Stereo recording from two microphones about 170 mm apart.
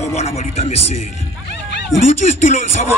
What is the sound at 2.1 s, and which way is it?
Speech, 50° left (ahead or behind).